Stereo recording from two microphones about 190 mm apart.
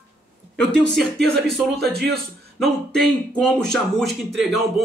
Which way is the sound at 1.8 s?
60° right (ahead or behind).